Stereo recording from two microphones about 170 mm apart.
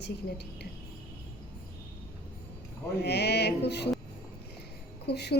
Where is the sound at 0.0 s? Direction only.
75° left (ahead or behind).